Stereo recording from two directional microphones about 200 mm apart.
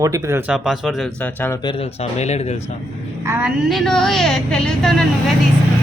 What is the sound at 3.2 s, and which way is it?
Speech, 10° right (ahead or behind).